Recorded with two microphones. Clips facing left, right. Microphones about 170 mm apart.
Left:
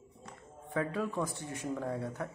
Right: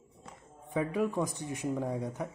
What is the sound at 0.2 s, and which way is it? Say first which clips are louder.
Speech: left 1 dB; 15° right (ahead or behind).